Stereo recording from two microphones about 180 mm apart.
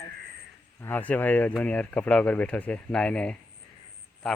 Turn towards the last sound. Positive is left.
turn(degrees=5)  # may be behind; listen again after turning